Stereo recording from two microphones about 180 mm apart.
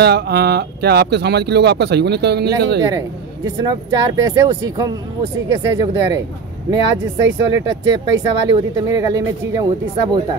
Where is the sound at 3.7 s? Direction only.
20° right (ahead or behind).